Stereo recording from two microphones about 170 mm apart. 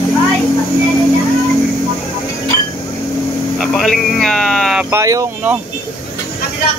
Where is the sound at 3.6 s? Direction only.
Centre (ahead or behind).